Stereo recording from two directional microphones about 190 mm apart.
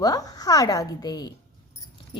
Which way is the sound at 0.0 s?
20° left (ahead or behind).